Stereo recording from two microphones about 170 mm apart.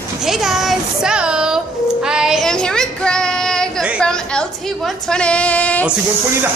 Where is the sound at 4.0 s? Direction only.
5° left (ahead or behind).